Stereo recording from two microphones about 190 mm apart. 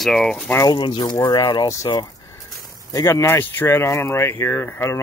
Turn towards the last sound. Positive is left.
turn(degrees=15)  # may be behind; listen again after turning